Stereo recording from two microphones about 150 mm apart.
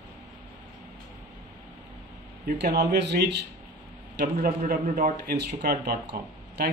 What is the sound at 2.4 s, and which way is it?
Speech, 90° right.